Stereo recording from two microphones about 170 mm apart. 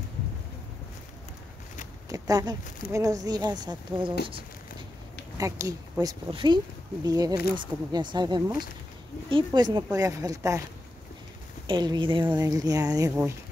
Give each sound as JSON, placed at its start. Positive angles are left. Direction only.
{"t": 2.0, "sound": "speech", "side_deg": -20}
{"t": 5.4, "sound": "speech", "side_deg": -20}
{"t": 11.6, "sound": "speech", "side_deg": -25}